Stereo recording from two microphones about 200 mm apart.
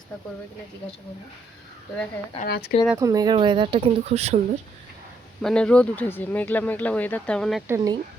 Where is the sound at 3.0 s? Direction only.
15° right (ahead or behind); by 4.3 s 35° right (ahead or behind).